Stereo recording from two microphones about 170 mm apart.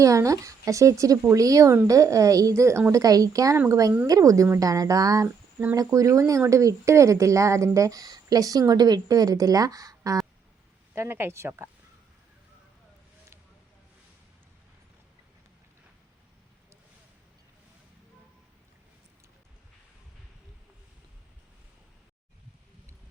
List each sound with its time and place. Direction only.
0.0 s speech: 20° right (ahead or behind)